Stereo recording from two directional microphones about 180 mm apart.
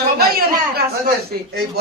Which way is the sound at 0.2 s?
60° right (ahead or behind).